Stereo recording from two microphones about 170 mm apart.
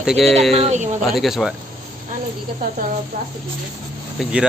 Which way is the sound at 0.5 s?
40° right (ahead or behind).